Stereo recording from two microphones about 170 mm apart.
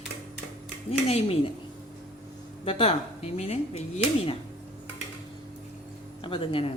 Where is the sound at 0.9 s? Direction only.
35° left (ahead or behind).